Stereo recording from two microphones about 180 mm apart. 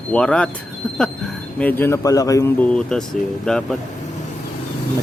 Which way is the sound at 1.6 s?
10° left (ahead or behind).